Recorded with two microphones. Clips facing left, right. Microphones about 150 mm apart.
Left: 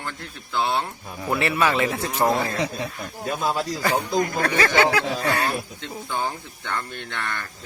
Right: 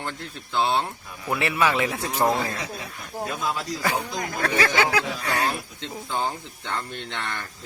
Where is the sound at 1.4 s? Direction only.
10° right (ahead or behind).